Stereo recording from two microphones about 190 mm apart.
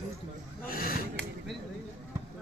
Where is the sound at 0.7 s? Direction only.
50° left (ahead or behind).